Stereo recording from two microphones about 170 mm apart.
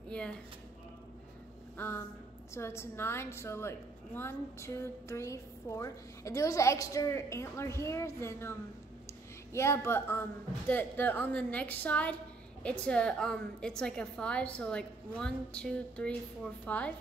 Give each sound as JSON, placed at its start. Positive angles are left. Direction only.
{"t": 1.8, "sound": "a woman's voice", "side_deg": 10}